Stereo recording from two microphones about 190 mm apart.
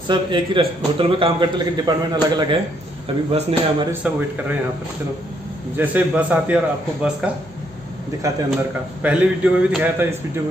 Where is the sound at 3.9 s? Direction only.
10° right (ahead or behind).